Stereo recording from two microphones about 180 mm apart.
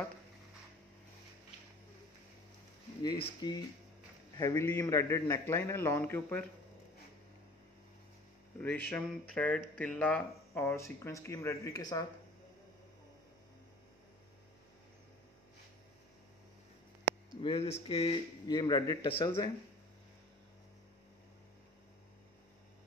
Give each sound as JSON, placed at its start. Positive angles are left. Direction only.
{"t": 3.0, "sound": "speech", "side_deg": 25}
{"t": 8.5, "sound": "speech", "side_deg": 10}
{"t": 17.4, "sound": "speech", "side_deg": 35}